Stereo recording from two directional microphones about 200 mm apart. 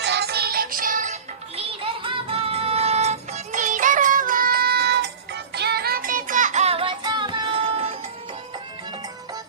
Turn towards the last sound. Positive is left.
turn(degrees=-30)  # may be behind; listen again after turning